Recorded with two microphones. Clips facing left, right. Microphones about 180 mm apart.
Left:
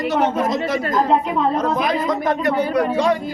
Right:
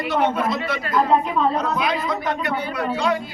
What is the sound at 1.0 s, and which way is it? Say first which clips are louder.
Speech: left 1 dB; 20° left (ahead or behind).